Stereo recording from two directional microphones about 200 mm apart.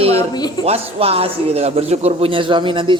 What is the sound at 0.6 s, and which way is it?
A man's voice, 30° right (ahead or behind).